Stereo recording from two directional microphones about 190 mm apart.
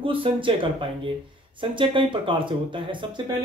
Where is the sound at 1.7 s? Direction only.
25° right (ahead or behind).